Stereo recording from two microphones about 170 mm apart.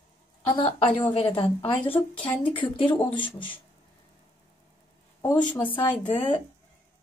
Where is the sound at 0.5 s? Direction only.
30° left (ahead or behind).